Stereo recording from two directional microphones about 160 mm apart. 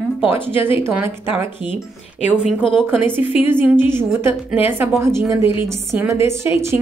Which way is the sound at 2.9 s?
15° right (ahead or behind).